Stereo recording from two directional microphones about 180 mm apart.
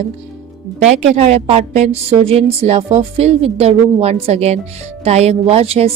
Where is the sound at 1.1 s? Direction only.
40° right (ahead or behind).